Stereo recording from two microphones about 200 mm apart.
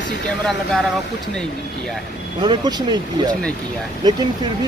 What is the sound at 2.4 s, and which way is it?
Speech, 20° right (ahead or behind).